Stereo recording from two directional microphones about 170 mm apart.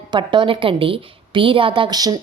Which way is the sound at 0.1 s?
30° right (ahead or behind).